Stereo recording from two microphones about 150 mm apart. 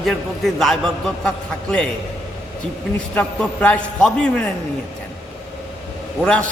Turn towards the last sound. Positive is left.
turn(degrees=10)  # may be behind; listen again after turning